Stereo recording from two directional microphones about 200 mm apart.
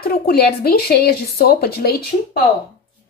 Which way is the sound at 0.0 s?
50° left (ahead or behind).